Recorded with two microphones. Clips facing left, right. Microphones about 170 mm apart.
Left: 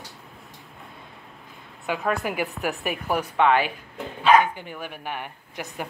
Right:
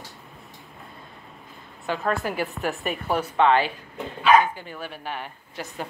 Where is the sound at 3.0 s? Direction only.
10° left (ahead or behind).